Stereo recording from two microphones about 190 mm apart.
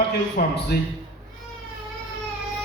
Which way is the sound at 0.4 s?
50° left (ahead or behind).